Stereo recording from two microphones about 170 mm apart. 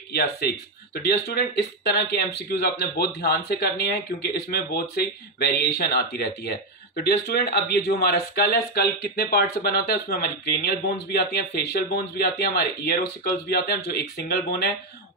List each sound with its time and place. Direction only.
0.1 s speech: 70° left (ahead or behind)